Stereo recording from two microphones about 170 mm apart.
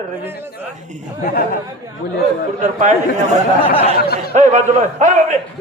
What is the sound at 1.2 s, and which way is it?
Speech, 60° left (ahead or behind).